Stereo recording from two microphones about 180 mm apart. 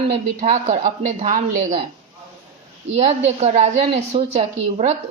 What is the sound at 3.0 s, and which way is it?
A woman's voice, 35° right (ahead or behind).